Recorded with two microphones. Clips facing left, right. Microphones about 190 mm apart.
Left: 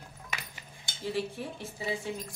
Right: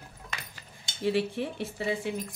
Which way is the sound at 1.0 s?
70° right (ahead or behind).